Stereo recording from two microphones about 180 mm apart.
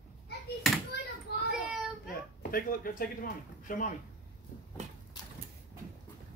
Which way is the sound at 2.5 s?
50° left (ahead or behind).